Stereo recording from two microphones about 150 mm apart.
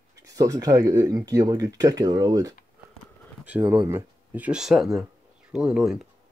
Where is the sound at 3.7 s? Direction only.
15° right (ahead or behind).